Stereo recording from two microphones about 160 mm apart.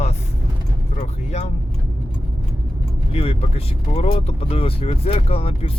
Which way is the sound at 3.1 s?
40° left (ahead or behind).